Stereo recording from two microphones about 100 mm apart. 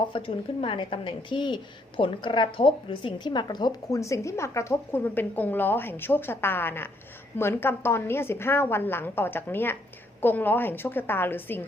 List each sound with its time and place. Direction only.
0.1 s a woman's voice: 60° left (ahead or behind); by 11.6 s 20° left (ahead or behind)